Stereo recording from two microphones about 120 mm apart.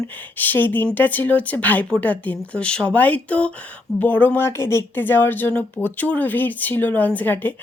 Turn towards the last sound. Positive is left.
turn(degrees=15)  # may be behind; listen again after turning